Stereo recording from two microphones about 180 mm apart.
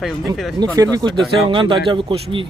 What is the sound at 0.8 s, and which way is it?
Speech, 20° right (ahead or behind).